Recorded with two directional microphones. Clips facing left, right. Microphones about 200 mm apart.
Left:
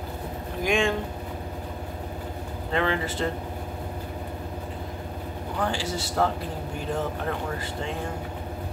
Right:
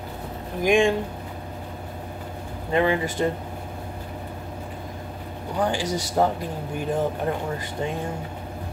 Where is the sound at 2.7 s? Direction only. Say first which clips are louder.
Right 4 dB; 15° right (ahead or behind).